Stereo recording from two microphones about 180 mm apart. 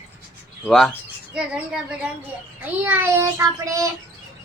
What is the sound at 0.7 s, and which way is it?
A child's voice, centre (ahead or behind).